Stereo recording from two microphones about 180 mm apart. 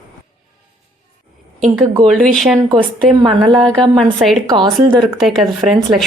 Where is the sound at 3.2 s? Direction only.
25° right (ahead or behind).